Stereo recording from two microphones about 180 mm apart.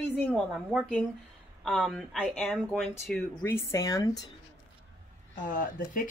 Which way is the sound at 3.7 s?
20° left (ahead or behind).